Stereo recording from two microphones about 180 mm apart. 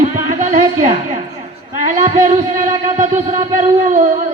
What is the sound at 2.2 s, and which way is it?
Music, 45° right (ahead or behind).